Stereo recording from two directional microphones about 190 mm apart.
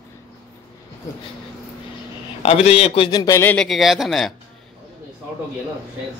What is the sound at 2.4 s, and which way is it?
A man's voice, 30° left (ahead or behind).